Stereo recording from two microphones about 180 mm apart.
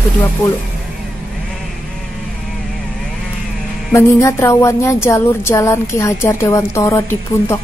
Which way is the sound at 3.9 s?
15° left (ahead or behind).